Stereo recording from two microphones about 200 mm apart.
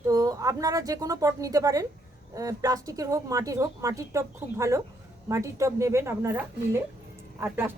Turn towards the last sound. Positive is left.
turn(degrees=-10)  # may be behind; listen again after turning